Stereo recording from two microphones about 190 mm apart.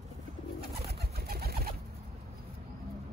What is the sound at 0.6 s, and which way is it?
Pigeon, 55° right (ahead or behind).